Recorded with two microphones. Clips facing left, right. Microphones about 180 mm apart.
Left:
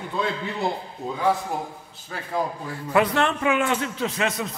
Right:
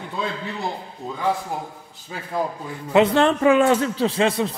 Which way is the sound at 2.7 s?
20° right (ahead or behind).